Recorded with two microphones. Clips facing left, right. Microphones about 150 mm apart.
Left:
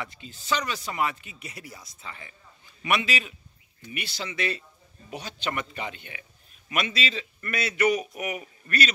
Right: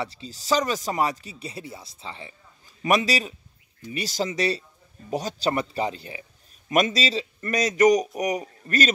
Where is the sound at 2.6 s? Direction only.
40° right (ahead or behind).